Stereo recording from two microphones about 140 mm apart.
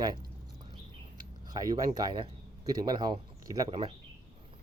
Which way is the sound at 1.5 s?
30° right (ahead or behind).